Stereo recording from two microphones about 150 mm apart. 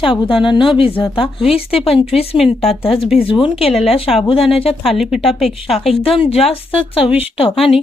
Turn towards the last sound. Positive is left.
turn(degrees=40)  # may be behind; listen again after turning